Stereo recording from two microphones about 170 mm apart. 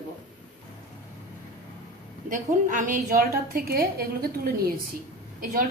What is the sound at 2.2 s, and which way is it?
A woman's voice, 50° right (ahead or behind).